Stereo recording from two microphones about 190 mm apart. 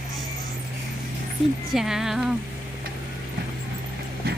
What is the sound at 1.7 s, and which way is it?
Speech, centre (ahead or behind).